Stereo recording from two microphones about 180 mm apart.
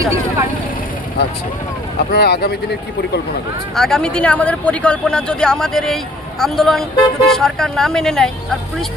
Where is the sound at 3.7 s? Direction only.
Centre (ahead or behind).